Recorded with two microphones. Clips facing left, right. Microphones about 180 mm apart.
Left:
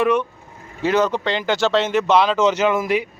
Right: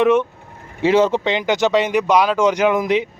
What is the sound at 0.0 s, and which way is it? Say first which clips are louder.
Speech: right 4 dB; 20° right (ahead or behind).